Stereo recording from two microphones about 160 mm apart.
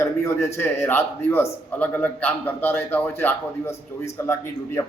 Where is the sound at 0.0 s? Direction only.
15° left (ahead or behind).